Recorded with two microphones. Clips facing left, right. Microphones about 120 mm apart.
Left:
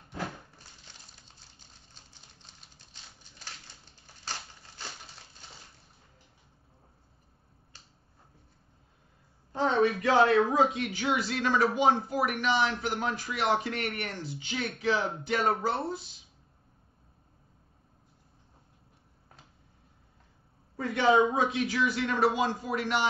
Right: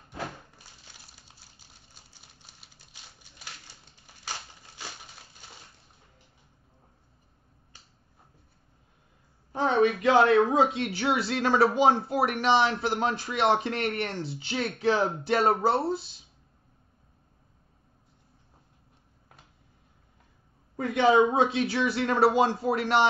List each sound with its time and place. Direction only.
1.1 s a sound: 10° right (ahead or behind)
9.6 s speech: 25° right (ahead or behind)
20.7 s speech: 20° right (ahead or behind)